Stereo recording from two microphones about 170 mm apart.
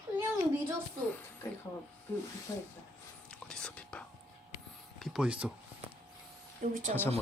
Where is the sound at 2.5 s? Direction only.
20° left (ahead or behind).